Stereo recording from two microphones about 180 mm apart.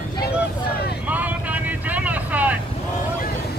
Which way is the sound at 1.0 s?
10° right (ahead or behind).